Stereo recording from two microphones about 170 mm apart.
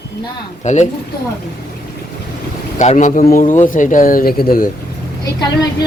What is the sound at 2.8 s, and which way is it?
Speech, 45° left (ahead or behind).